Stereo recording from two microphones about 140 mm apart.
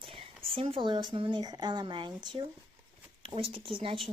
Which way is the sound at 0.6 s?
40° right (ahead or behind).